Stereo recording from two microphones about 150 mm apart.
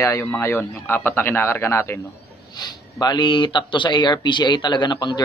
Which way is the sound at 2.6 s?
30° left (ahead or behind).